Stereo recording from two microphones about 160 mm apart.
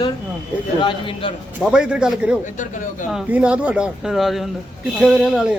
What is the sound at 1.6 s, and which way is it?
Speech, 5° right (ahead or behind).